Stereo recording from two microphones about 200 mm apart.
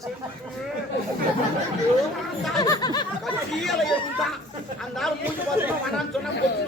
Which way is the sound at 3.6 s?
Centre (ahead or behind).